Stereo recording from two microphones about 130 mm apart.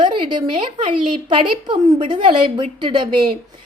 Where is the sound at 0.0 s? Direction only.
40° right (ahead or behind).